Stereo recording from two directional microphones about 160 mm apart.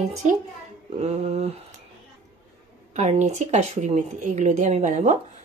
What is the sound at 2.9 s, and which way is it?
Speech, 45° right (ahead or behind).